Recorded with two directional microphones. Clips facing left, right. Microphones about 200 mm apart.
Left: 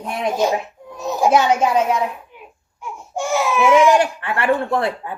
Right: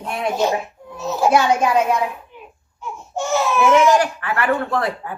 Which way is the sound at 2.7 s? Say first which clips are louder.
Even; 10° left (ahead or behind).